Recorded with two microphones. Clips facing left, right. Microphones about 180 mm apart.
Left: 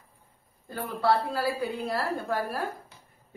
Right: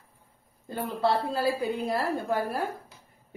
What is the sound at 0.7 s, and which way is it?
A woman's voice, 20° right (ahead or behind).